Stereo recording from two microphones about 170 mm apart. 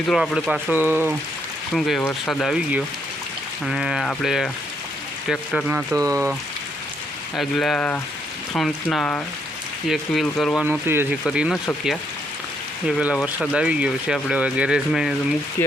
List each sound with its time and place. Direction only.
0.1 s speech: centre (ahead or behind)
0.7 s speech: 10° right (ahead or behind)
1.7 s speech: centre (ahead or behind)
5.7 s speech: 15° right (ahead or behind)
7.3 s speech: centre (ahead or behind)
10.6 s speech: 10° right (ahead or behind)
13.0 s speech: 5° right (ahead or behind)